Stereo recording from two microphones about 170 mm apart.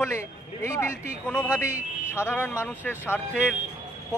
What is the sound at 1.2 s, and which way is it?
Speech, 5° left (ahead or behind).